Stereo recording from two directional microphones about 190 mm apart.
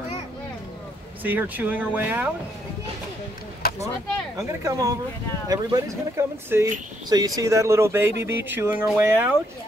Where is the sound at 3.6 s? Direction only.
50° left (ahead or behind).